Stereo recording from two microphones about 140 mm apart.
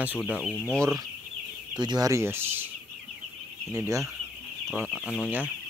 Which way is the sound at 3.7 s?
20° right (ahead or behind).